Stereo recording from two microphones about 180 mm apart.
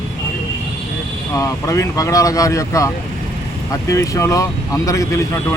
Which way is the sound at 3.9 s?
15° left (ahead or behind).